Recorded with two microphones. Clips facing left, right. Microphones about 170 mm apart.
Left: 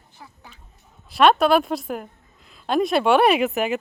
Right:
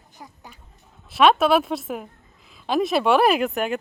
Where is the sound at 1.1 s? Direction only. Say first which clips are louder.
Left 1 dB; centre (ahead or behind).